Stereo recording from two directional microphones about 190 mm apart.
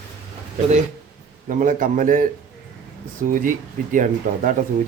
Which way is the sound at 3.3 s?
45° right (ahead or behind).